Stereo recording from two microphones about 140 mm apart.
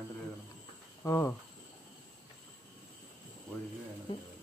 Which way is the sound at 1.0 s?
20° left (ahead or behind).